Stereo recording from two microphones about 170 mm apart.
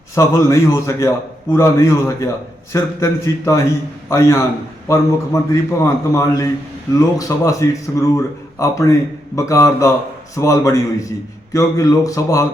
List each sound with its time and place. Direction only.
0.1 s a man's voice: 15° left (ahead or behind)